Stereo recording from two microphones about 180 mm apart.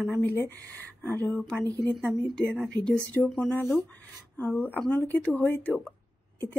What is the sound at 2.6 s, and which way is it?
A woman's voice, 5° left (ahead or behind).